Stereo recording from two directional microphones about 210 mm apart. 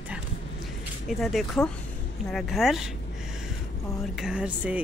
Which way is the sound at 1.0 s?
Centre (ahead or behind).